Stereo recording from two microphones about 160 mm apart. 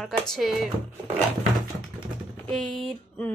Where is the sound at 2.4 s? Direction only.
Centre (ahead or behind).